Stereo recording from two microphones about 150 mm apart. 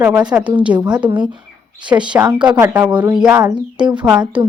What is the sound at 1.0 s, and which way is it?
Speech, 30° right (ahead or behind).